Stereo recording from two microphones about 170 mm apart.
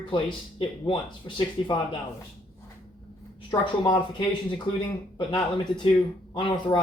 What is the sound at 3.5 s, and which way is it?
Speech, 25° left (ahead or behind).